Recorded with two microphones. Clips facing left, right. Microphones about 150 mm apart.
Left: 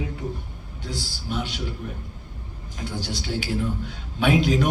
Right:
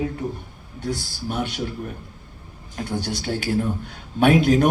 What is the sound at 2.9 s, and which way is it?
A man's voice, 55° right (ahead or behind).